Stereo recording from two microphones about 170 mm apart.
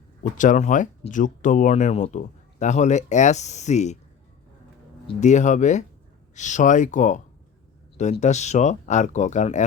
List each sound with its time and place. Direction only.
0.2 s speech: 50° left (ahead or behind)
5.2 s speech: 45° left (ahead or behind)